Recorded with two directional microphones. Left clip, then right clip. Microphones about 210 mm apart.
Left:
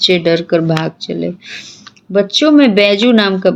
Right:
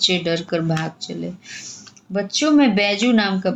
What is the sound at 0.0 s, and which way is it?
A woman's voice, 45° left (ahead or behind).